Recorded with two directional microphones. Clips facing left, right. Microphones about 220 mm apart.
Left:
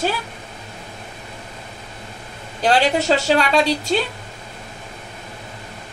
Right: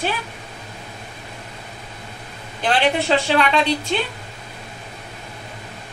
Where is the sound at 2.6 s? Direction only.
40° left (ahead or behind).